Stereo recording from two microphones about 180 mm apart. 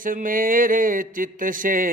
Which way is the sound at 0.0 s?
50° right (ahead or behind).